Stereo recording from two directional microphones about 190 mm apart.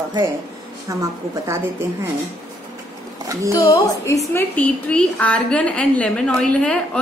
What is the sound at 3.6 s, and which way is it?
A woman's voice, 15° left (ahead or behind).